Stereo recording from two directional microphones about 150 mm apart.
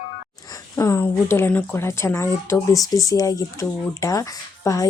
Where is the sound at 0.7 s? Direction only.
20° left (ahead or behind).